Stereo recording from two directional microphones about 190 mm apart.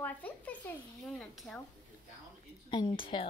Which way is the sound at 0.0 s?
10° left (ahead or behind).